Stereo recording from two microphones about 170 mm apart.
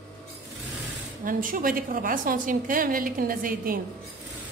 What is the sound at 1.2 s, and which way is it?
A woman's voice, 55° right (ahead or behind).